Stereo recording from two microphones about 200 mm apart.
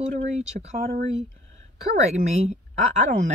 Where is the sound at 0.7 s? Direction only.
50° right (ahead or behind).